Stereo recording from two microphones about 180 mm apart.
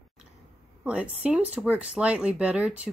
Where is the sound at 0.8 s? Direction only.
5° right (ahead or behind).